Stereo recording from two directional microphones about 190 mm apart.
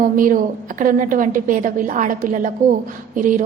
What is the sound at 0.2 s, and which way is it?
A woman's voice, 45° right (ahead or behind).